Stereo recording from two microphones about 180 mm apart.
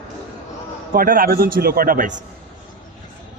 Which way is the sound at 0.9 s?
50° right (ahead or behind).